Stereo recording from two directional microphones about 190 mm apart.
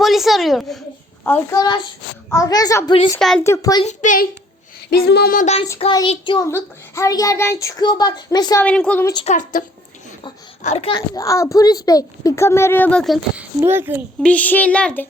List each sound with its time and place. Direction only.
0.0 s a woman's voice: centre (ahead or behind)
1.2 s speech: 15° left (ahead or behind)
3.2 s a child's voice: centre (ahead or behind)
3.4 s a child's voice: 15° left (ahead or behind)
3.8 s child singing: 45° left (ahead or behind)
4.9 s child singing: 60° left (ahead or behind); by 5.6 s 40° left (ahead or behind)
5.9 s speech: 25° left (ahead or behind)
6.5 s speech: 15° left (ahead or behind)
8.6 s a child's voice: 5° left (ahead or behind)
9.1 s a child's voice: 35° left (ahead or behind); by 14.0 s 10° right (ahead or behind)
14.2 s a child's voice: 5° left (ahead or behind)